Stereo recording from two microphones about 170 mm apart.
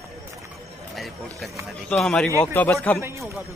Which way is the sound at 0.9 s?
Centre (ahead or behind).